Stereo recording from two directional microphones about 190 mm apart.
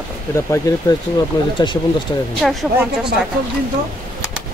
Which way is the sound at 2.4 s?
Centre (ahead or behind).